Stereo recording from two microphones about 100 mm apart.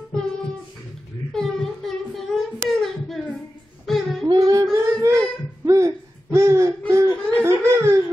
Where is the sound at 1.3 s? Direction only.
5° left (ahead or behind).